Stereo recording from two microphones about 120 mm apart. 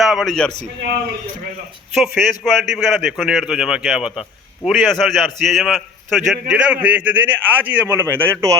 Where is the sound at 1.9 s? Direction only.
Centre (ahead or behind).